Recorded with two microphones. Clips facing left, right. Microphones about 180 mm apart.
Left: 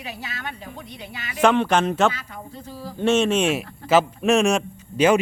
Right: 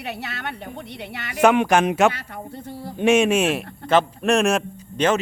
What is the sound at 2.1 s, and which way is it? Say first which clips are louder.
Speech: right 2 dB; 60° right (ahead or behind).